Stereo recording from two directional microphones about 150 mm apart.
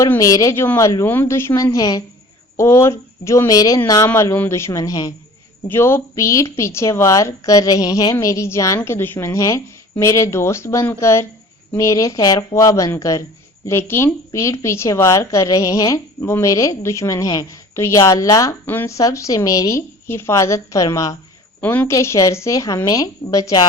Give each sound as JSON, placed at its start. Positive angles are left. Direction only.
{"t": 0.0, "sound": "a woman's voice", "side_deg": 20}
{"t": 21.6, "sound": "a woman's voice", "side_deg": 10}